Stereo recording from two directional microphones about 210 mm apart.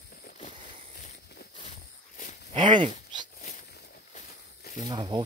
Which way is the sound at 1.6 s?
35° left (ahead or behind).